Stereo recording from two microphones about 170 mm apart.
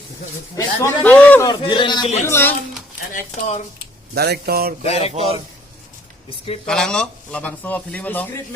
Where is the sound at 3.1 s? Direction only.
45° left (ahead or behind).